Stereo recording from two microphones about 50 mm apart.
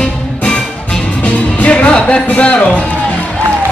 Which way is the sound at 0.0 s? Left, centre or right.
Centre.